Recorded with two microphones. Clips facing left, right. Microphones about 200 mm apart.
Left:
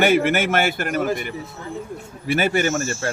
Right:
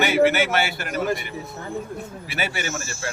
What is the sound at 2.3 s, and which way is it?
Speech, 50° left (ahead or behind).